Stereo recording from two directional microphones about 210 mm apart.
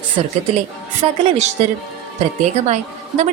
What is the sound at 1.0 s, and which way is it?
Speech, 30° right (ahead or behind).